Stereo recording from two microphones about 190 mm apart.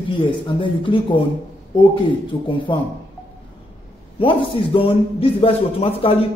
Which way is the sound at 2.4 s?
25° left (ahead or behind).